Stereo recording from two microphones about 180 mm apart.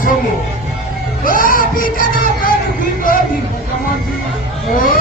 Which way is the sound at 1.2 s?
50° left (ahead or behind).